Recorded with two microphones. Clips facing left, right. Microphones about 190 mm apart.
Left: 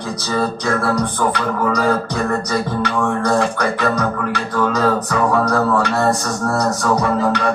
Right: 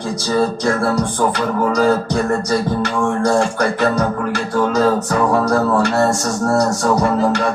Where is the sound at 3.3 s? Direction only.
35° right (ahead or behind).